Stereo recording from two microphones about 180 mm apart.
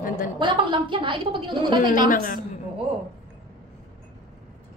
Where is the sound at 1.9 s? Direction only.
50° left (ahead or behind).